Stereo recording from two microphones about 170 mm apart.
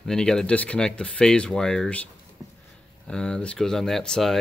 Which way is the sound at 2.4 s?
15° right (ahead or behind).